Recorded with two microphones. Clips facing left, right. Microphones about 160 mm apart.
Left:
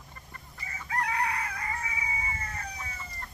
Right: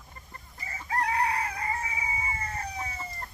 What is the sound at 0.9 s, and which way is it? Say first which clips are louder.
Chicken: right 3 dB; 30° right (ahead or behind).